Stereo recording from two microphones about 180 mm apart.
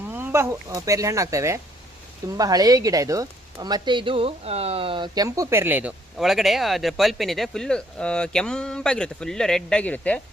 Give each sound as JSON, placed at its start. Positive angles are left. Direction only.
{"t": 0.1, "sound": "speech", "side_deg": -10}